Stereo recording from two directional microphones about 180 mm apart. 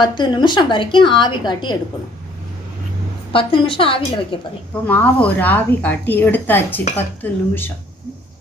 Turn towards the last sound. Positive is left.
turn(degrees=10)  # may be behind; listen again after turning